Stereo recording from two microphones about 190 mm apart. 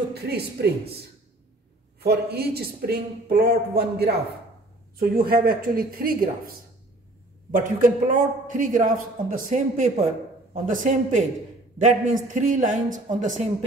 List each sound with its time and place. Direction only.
0.1 s speech: 60° right (ahead or behind)
2.0 s a man's voice: 55° right (ahead or behind)
7.5 s a man's voice: 45° right (ahead or behind)